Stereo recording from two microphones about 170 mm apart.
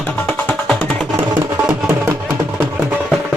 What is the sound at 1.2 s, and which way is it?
Music, 10° right (ahead or behind).